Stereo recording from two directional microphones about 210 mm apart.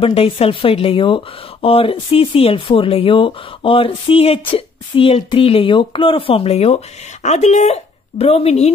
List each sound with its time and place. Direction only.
0.0 s speech: 30° left (ahead or behind)